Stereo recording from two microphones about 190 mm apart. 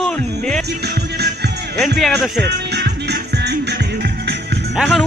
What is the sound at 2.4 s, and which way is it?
Music, 60° right (ahead or behind).